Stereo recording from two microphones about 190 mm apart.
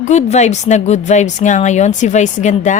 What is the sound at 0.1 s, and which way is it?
Speech, 35° left (ahead or behind).